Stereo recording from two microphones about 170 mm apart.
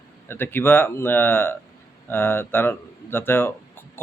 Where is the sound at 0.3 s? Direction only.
10° left (ahead or behind).